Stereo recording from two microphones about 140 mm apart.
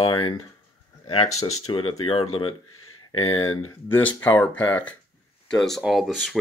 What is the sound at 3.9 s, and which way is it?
Speech, 10° left (ahead or behind).